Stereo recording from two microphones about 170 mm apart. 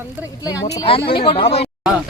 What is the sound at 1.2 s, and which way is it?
Speech, 35° left (ahead or behind).